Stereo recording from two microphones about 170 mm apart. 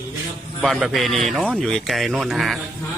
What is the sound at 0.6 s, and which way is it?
A man's voice, centre (ahead or behind).